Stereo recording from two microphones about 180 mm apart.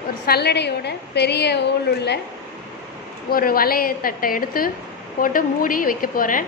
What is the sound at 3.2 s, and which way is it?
A woman's voice, 55° left (ahead or behind).